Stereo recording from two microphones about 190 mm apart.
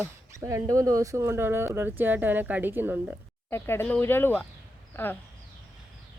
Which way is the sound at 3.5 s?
10° left (ahead or behind).